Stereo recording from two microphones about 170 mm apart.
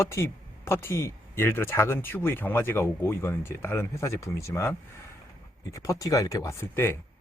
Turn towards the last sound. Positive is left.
turn(degrees=15)  # may be behind; listen again after turning